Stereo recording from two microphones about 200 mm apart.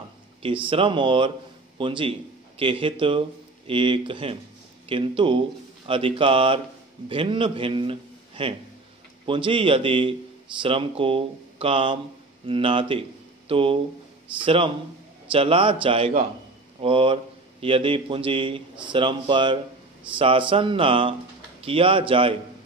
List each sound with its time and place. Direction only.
0.4 s a man's voice: 25° right (ahead or behind)